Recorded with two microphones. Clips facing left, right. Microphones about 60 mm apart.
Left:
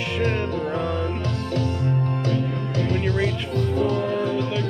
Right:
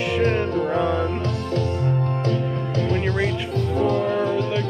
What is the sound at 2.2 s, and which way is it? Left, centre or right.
Music, right.